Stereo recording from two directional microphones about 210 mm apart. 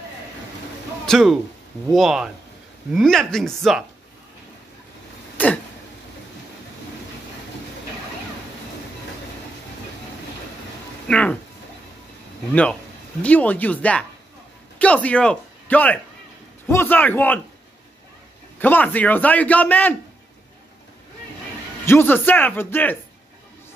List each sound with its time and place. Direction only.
1.0 s speech: centre (ahead or behind)
5.4 s a sound: 10° left (ahead or behind)
11.1 s speech: 5° left (ahead or behind)
13.2 s a man's voice: 5° left (ahead or behind)
18.6 s a man's voice: 10° left (ahead or behind)
21.8 s a man's voice: 10° left (ahead or behind)